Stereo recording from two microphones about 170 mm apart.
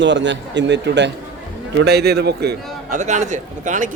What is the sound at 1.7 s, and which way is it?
Speech, 75° right (ahead or behind).